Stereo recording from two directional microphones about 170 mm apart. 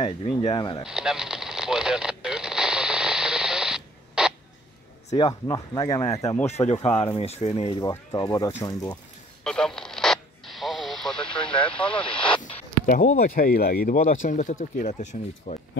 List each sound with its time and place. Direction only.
0.0 s speech: 30° left (ahead or behind)
0.8 s radio: 5° right (ahead or behind)
5.1 s speech: 25° left (ahead or behind)
6.4 s speech: 40° left (ahead or behind)
7.9 s speech: 20° left (ahead or behind)
9.4 s radio: 5° left (ahead or behind)
12.1 s a sound: 30° left (ahead or behind)
12.4 s speech: 50° left (ahead or behind)